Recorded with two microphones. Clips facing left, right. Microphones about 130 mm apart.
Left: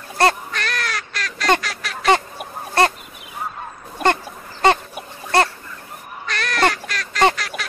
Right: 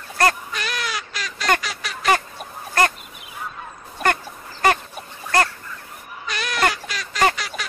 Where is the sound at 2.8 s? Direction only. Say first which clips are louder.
Left 3 dB; 25° left (ahead or behind).